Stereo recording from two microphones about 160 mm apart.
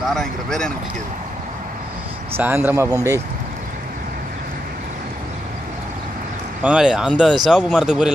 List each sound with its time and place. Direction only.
0.1 s speech: centre (ahead or behind)
2.3 s speech: 15° right (ahead or behind)
6.6 s speech: 5° right (ahead or behind)